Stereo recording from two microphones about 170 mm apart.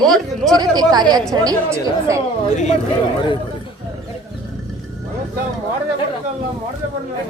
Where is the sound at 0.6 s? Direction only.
25° right (ahead or behind).